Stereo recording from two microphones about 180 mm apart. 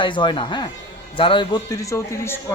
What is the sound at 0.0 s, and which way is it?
A woman's voice, 25° left (ahead or behind).